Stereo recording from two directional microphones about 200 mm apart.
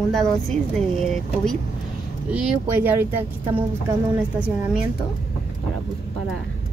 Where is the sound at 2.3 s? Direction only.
10° right (ahead or behind).